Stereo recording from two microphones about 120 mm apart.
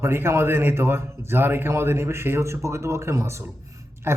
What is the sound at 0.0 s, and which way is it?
A man's voice, 20° right (ahead or behind).